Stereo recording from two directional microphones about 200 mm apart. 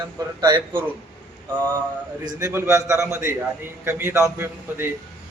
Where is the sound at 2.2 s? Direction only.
15° right (ahead or behind).